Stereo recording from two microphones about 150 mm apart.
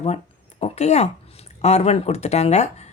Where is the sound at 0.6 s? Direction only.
45° left (ahead or behind).